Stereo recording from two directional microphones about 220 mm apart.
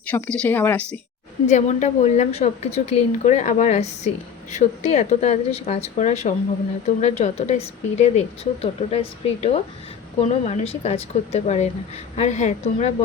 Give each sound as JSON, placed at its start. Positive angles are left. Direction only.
{"t": 0.1, "sound": "speech", "side_deg": 5}
{"t": 1.5, "sound": "a woman's voice", "side_deg": 35}